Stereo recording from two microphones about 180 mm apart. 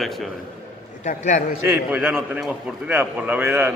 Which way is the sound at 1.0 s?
40° left (ahead or behind).